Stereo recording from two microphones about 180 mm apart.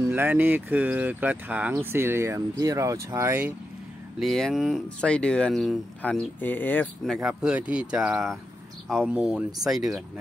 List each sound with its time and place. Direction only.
0.1 s speech: 10° right (ahead or behind)
4.2 s speech: centre (ahead or behind)
7.2 s speech: 5° right (ahead or behind)